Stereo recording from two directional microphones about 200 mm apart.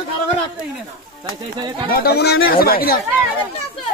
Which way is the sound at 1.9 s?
50° left (ahead or behind).